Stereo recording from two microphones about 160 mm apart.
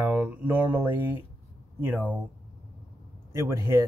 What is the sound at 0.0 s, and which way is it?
Speech, 10° right (ahead or behind).